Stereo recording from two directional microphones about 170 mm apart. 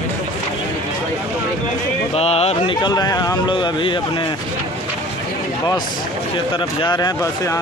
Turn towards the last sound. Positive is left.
turn(degrees=20)  # may be behind; listen again after turning